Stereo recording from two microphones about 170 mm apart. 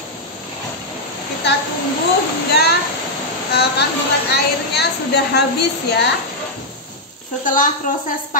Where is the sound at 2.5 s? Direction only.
75° left (ahead or behind).